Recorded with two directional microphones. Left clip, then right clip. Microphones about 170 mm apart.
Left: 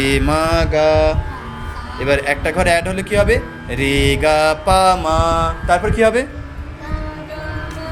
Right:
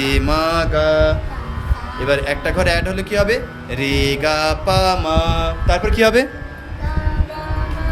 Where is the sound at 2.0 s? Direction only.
20° left (ahead or behind).